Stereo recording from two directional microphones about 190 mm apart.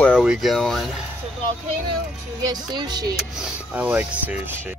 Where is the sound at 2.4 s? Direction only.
20° right (ahead or behind).